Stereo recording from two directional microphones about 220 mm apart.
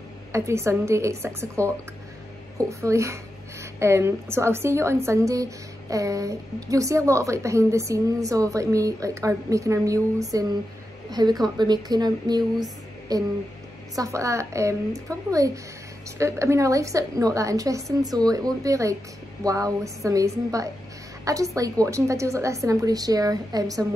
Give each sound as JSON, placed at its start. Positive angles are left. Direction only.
{"t": 0.3, "sound": "a woman's voice", "side_deg": -15}
{"t": 2.8, "sound": "a woman's voice", "side_deg": -15}